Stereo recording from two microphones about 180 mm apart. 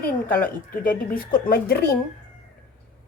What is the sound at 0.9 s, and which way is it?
Speech, 55° left (ahead or behind).